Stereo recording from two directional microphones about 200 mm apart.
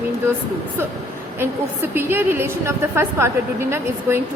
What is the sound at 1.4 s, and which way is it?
A woman's voice, 10° right (ahead or behind).